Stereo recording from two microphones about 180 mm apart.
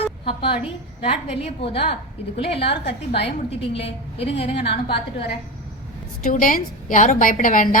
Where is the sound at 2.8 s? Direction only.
70° left (ahead or behind).